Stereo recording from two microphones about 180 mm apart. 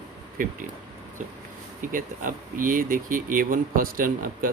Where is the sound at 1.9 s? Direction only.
50° right (ahead or behind).